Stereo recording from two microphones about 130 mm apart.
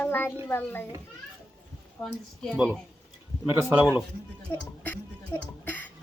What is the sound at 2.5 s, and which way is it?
Speech, 10° right (ahead or behind).